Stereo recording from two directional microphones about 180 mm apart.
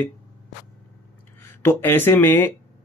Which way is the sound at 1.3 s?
10° left (ahead or behind).